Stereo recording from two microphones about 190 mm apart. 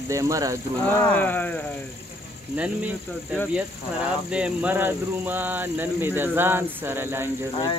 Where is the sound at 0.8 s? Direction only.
10° left (ahead or behind).